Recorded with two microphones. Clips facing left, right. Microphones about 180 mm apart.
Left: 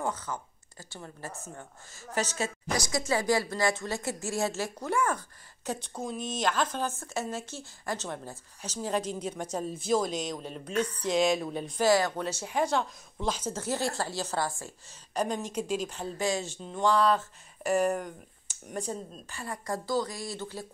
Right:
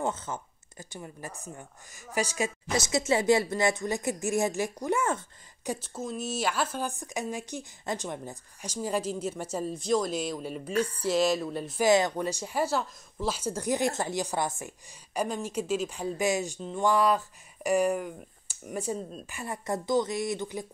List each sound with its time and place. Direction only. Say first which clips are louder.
0.0 s speech: right 2 dB; 25° right (ahead or behind)
2.7 s speech: right 3 dB; 25° right (ahead or behind)
5.7 s speech: right 1 dB; 5° right (ahead or behind)
11.8 s speech: right 2 dB; 20° right (ahead or behind)
15.1 s speech: even; 5° right (ahead or behind)
17.8 s speech: right 1 dB; 5° right (ahead or behind)
19.2 s speech: right 2 dB; 20° right (ahead or behind)